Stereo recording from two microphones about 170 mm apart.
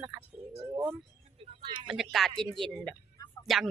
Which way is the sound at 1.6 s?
25° right (ahead or behind).